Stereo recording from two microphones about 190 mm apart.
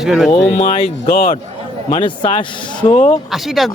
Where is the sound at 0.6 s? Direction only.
30° left (ahead or behind).